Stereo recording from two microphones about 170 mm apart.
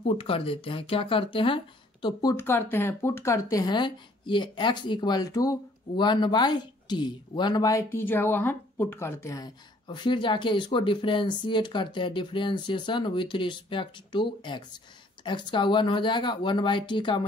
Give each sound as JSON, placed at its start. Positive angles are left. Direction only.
{"t": 0.0, "sound": "speech", "side_deg": 35}
{"t": 2.3, "sound": "speech", "side_deg": 15}